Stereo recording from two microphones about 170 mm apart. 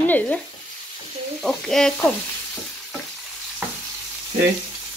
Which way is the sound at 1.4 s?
5° left (ahead or behind).